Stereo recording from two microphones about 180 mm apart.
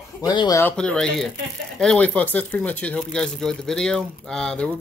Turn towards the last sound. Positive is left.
turn(degrees=5)  # may be behind; listen again after turning